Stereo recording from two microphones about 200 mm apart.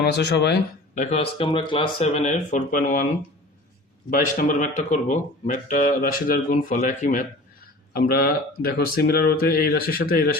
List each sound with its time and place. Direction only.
0.0 s speech: 55° left (ahead or behind)
0.9 s speech: 35° left (ahead or behind)
4.1 s speech: 40° left (ahead or behind)